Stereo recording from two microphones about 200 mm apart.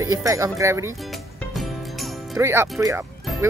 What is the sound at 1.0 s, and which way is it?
Music, centre (ahead or behind).